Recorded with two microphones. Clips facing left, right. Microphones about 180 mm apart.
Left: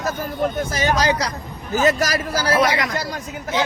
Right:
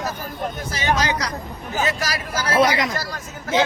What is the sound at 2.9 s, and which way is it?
Speech, 20° left (ahead or behind).